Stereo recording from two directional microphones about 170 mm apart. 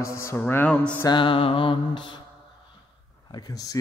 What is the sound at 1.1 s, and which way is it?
A man's voice, 30° left (ahead or behind).